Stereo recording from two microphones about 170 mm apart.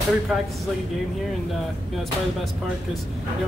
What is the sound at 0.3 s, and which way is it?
Speech, 5° right (ahead or behind).